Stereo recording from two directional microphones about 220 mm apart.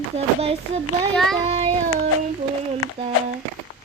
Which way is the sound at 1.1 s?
Centre (ahead or behind).